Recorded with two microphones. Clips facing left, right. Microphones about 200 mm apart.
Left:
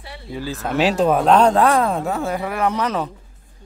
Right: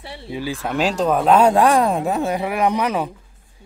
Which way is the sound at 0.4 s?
10° right (ahead or behind).